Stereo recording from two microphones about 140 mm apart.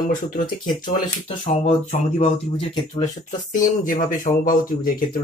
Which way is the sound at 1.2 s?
40° left (ahead or behind).